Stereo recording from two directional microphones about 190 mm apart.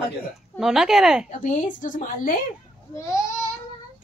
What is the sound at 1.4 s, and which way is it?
Speech, 40° left (ahead or behind).